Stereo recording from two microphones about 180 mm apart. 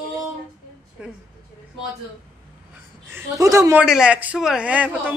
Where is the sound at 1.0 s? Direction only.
5° right (ahead or behind).